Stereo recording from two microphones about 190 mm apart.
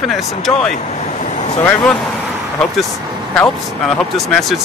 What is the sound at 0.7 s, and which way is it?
Vehicle, 35° left (ahead or behind).